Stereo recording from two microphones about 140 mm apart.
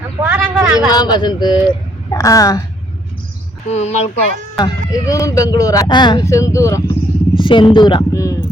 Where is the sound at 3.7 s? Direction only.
50° left (ahead or behind).